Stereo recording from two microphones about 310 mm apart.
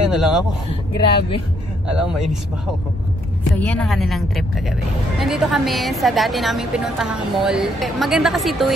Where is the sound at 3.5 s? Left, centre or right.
Centre.